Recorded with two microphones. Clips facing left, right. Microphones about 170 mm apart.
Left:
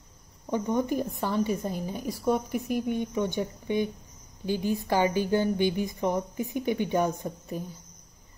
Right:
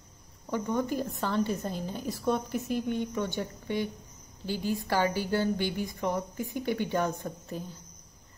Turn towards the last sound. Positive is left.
turn(degrees=15)  # may be behind; listen again after turning